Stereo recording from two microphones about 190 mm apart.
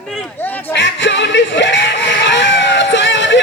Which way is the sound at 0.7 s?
70° left (ahead or behind).